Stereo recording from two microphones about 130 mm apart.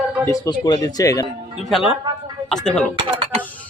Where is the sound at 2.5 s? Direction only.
5° left (ahead or behind).